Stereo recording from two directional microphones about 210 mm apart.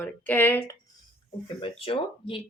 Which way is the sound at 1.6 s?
25° left (ahead or behind).